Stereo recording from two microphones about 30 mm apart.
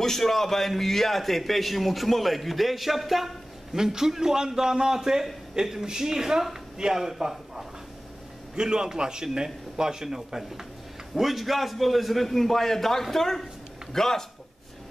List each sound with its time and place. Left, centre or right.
0.0 s a man's voice: centre
3.7 s a man's voice: centre